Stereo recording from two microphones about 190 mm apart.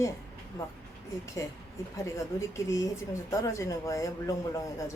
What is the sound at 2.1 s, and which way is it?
Speech, 15° left (ahead or behind).